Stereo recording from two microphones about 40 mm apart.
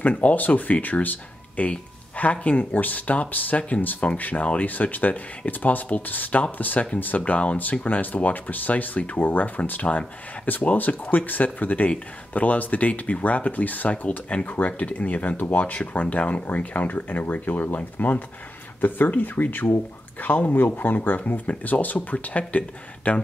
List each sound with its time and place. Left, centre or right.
0.1 s speech: left
1.7 s a sound: left
2.4 s speech: left
9.8 s speech: left
10.4 s speech: left
20.2 s speech: left
20.5 s speech: left
22.6 s speech: left